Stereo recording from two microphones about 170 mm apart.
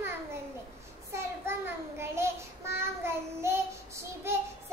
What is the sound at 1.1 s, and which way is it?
Child singing, 15° right (ahead or behind).